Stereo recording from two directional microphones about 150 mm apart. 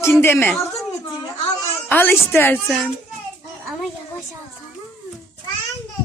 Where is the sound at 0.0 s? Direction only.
15° left (ahead or behind).